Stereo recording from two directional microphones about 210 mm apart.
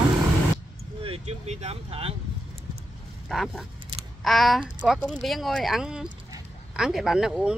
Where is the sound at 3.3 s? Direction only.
Centre (ahead or behind).